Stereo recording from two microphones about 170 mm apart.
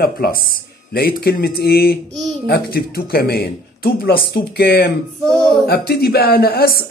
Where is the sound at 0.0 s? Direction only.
60° left (ahead or behind).